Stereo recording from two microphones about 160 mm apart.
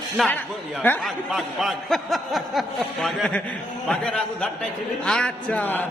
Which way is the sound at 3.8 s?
5° left (ahead or behind).